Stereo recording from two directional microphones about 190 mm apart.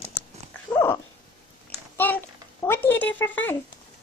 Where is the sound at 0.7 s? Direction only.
10° left (ahead or behind).